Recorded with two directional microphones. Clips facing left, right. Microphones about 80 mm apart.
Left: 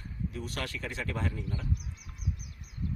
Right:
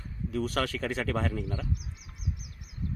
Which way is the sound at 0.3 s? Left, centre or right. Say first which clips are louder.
Right 11 dB; right.